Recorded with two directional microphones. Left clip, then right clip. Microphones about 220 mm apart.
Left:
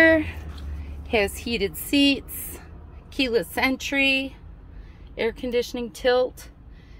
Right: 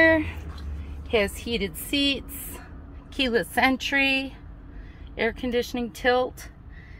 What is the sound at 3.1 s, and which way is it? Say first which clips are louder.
Speech: even; 25° left (ahead or behind).